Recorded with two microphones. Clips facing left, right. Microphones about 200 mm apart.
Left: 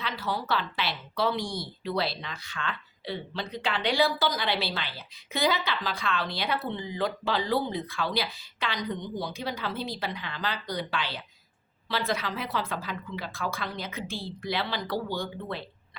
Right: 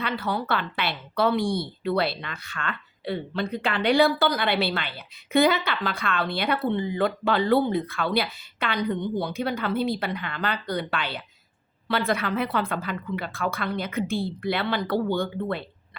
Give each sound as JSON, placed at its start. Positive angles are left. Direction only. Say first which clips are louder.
{"t": 0.0, "sound": "a woman's voice", "louder": "right 5 dB", "side_deg": -60}